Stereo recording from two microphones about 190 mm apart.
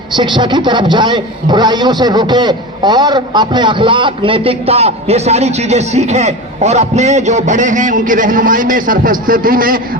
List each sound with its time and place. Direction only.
0.2 s a man's voice: 25° right (ahead or behind); by 9.8 s 50° right (ahead or behind)